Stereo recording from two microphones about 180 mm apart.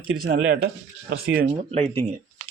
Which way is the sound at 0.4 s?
55° right (ahead or behind).